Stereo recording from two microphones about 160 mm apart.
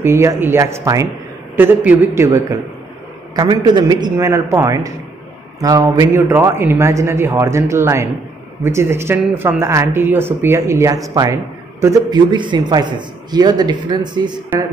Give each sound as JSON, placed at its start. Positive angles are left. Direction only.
{"t": 0.0, "sound": "speech", "side_deg": -15}
{"t": 3.3, "sound": "a man's voice", "side_deg": -25}